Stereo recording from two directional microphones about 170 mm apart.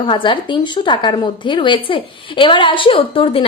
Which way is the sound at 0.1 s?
30° left (ahead or behind).